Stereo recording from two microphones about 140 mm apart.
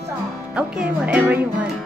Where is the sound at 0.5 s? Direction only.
10° right (ahead or behind).